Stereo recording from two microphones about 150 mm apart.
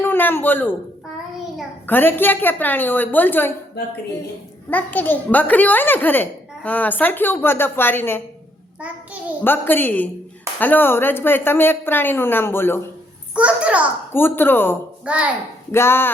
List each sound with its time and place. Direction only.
0.0 s a man's voice: 15° left (ahead or behind)
1.9 s a child's voice: 15° left (ahead or behind)
4.7 s a child's voice: 10° left (ahead or behind)
9.4 s a child's voice: 15° left (ahead or behind)
13.3 s a child's voice: 10° right (ahead or behind)
14.1 s a child's voice: 15° left (ahead or behind)
15.0 s a child's voice: 10° right (ahead or behind)
15.7 s a child's voice: 15° left (ahead or behind)